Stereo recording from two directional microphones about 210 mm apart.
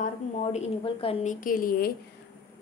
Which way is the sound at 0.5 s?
25° left (ahead or behind).